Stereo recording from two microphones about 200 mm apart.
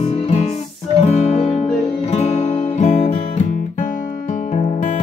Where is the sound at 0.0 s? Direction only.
30° left (ahead or behind).